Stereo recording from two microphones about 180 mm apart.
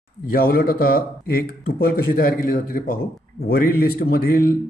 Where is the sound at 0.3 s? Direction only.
55° left (ahead or behind).